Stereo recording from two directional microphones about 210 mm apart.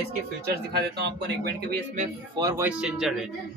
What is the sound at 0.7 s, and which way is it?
Speech, 50° right (ahead or behind).